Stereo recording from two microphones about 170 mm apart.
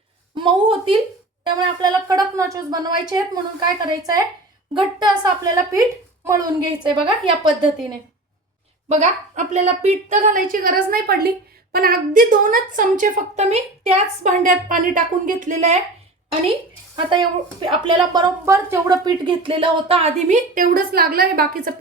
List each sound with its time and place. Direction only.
0.3 s a woman's voice: 30° right (ahead or behind)
8.9 s a woman's voice: 45° right (ahead or behind)
16.9 s a woman's voice: 30° right (ahead or behind); by 21.7 s 60° right (ahead or behind)